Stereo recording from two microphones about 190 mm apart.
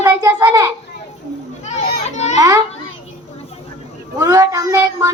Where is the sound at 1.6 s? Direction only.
35° left (ahead or behind).